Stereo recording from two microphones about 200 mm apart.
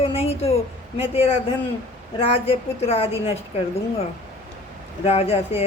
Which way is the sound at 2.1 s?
30° left (ahead or behind).